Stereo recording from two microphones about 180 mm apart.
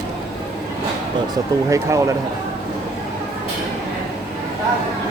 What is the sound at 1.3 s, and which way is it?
Speech, 15° right (ahead or behind).